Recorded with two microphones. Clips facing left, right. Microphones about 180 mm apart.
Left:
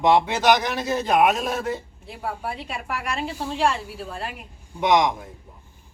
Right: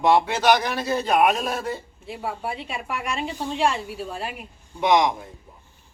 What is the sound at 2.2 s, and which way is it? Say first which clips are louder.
A woman's voice: even; 10° right (ahead or behind).